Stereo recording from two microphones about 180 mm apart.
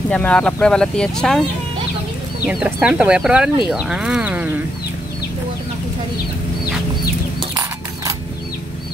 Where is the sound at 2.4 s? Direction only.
5° right (ahead or behind).